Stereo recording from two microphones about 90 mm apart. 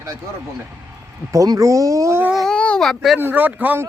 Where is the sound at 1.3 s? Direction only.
40° right (ahead or behind).